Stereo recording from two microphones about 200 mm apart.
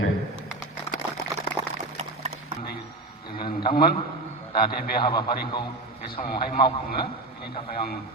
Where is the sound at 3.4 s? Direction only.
25° left (ahead or behind).